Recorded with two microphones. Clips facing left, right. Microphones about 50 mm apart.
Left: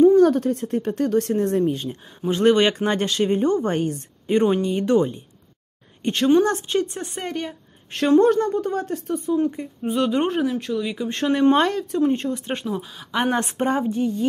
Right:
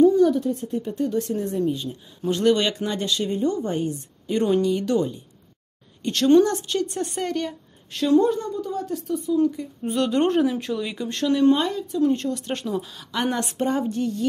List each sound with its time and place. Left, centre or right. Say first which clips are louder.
0.1 s a woman's voice: left 3 dB; left
2.2 s speech: left 3 dB; left
4.3 s speech: left 1 dB; left
6.0 s a woman's voice: right 1 dB; left
7.9 s a woman's voice: left 3 dB; left
9.8 s speech: even; centre
11.1 s speech: even; left
11.5 s speech: left 4 dB; left
12.0 s a woman's voice: right 1 dB; left
13.8 s a woman's voice: left 3 dB; centre